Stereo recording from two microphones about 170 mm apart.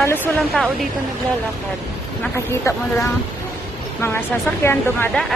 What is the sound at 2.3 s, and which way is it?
Speech, 15° left (ahead or behind).